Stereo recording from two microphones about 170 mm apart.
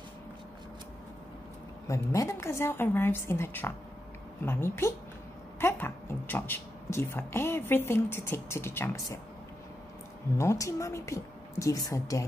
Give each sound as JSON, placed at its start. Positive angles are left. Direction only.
{"t": 1.9, "sound": "speech", "side_deg": 15}
{"t": 10.3, "sound": "speech", "side_deg": 15}